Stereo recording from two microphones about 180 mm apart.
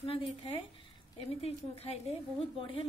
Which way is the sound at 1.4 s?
35° left (ahead or behind).